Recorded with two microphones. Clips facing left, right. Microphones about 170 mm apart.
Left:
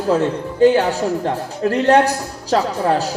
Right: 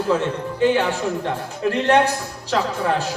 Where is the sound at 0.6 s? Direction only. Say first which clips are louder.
Left 5 dB; 40° left (ahead or behind).